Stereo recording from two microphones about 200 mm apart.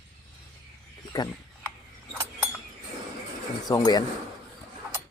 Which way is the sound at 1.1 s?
20° left (ahead or behind).